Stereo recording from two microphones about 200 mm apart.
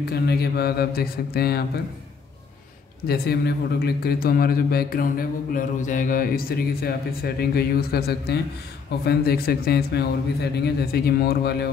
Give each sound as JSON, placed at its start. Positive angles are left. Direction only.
{"t": 0.0, "sound": "a man's voice", "side_deg": 55}
{"t": 3.1, "sound": "a man's voice", "side_deg": 50}